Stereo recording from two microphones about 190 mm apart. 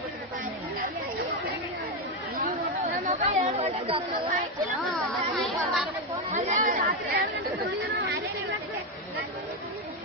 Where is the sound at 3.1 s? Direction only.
40° right (ahead or behind).